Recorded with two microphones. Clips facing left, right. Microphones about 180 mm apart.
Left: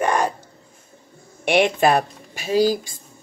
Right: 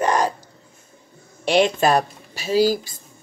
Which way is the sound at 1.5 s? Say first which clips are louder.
Even; 60° left (ahead or behind).